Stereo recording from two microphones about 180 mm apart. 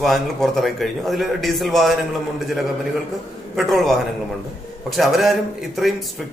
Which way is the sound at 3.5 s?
Centre (ahead or behind).